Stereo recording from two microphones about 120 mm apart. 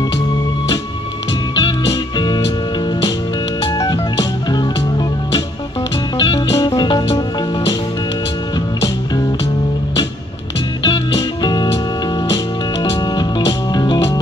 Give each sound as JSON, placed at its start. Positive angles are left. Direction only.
{"t": 1.5, "sound": "music", "side_deg": 35}
{"t": 3.7, "sound": "music", "side_deg": 35}
{"t": 10.9, "sound": "music", "side_deg": 35}
{"t": 13.0, "sound": "music", "side_deg": 35}